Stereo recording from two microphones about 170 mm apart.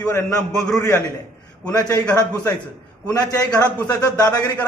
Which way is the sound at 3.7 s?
20° left (ahead or behind).